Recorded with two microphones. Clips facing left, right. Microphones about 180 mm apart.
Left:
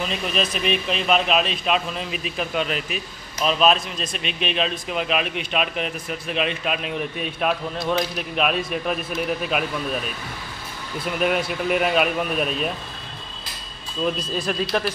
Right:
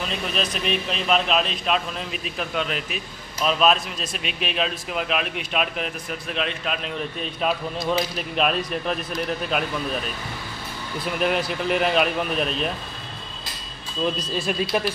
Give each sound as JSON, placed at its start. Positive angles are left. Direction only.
{"t": 0.1, "sound": "a man's voice", "side_deg": 5}
{"t": 14.0, "sound": "a man's voice", "side_deg": 0}